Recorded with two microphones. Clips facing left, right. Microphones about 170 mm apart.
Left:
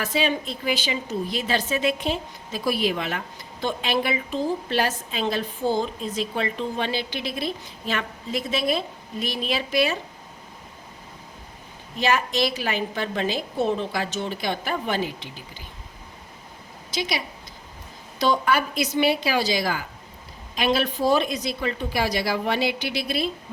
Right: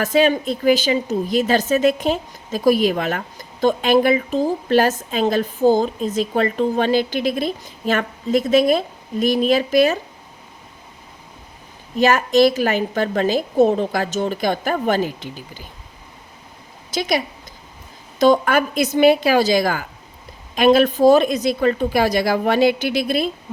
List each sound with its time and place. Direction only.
0.0 s a woman's voice: 50° right (ahead or behind)
11.9 s a woman's voice: 45° right (ahead or behind)
16.9 s a woman's voice: 50° right (ahead or behind)